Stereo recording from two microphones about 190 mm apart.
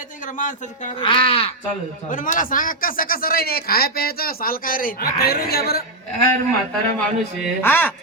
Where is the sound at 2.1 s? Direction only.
45° left (ahead or behind).